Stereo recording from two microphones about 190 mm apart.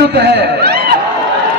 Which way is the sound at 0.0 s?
60° right (ahead or behind).